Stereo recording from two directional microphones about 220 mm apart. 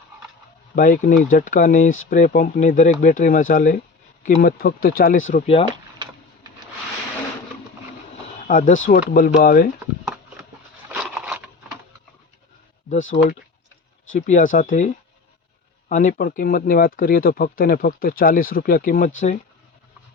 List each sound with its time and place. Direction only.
0.8 s speech: 40° left (ahead or behind)
5.3 s speech: 30° left (ahead or behind)
8.4 s speech: 35° left (ahead or behind)
10.9 s a sound: 5° right (ahead or behind)
14.1 s speech: 35° left (ahead or behind)